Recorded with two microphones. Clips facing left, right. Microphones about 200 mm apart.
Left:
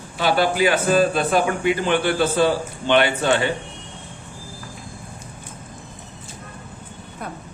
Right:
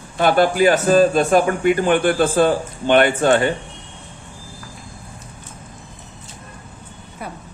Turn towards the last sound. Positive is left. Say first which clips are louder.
# even
turn(degrees=-5)  # may be behind; listen again after turning